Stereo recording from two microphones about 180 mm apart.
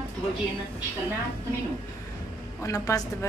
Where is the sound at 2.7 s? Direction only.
15° left (ahead or behind).